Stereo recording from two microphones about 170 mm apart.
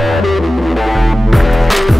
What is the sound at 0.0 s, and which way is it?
Music, centre (ahead or behind).